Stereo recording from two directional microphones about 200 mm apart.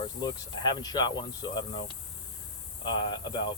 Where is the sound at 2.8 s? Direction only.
20° left (ahead or behind).